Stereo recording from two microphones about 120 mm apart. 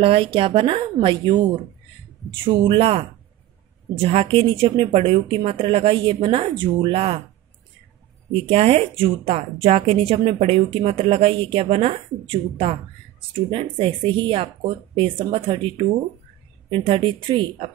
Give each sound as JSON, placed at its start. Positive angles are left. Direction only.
{"t": 0.0, "sound": "speech", "side_deg": -50}
{"t": 0.9, "sound": "a woman's voice", "side_deg": -40}
{"t": 8.3, "sound": "speech", "side_deg": -55}